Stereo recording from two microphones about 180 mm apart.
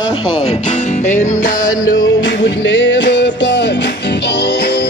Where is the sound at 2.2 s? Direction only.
90° left.